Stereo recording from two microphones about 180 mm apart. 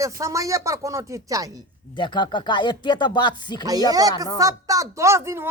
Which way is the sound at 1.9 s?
25° left (ahead or behind).